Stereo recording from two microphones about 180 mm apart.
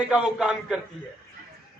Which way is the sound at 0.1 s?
5° right (ahead or behind).